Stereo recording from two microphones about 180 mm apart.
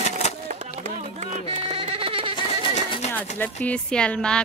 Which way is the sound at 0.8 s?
40° right (ahead or behind).